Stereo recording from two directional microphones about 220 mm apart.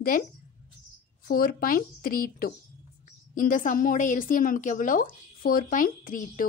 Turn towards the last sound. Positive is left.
turn(degrees=40)  # may be behind; listen again after turning